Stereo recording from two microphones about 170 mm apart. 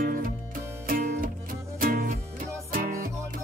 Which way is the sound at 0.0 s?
55° right (ahead or behind).